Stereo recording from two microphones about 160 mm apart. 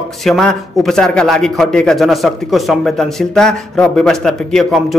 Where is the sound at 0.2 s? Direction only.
Centre (ahead or behind).